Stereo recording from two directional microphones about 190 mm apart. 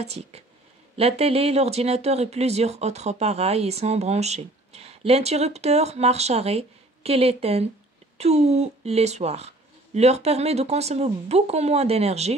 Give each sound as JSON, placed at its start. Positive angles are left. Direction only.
{"t": 0.0, "sound": "speech", "side_deg": -35}